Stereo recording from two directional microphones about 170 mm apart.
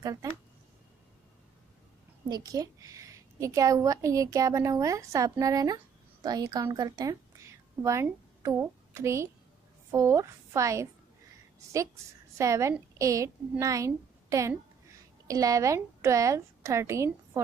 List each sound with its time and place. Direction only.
0.0 s a woman's voice: 20° right (ahead or behind)
2.2 s a woman's voice: 25° right (ahead or behind)
12.4 s a woman's voice: 15° right (ahead or behind)